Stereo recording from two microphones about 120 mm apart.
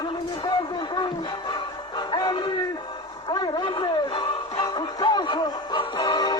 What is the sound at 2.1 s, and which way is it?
Music, 35° left (ahead or behind).